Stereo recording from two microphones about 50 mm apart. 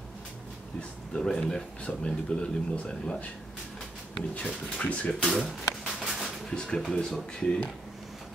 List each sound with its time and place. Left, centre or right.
0.7 s speech: centre
5.2 s a sound: centre
6.5 s speech: centre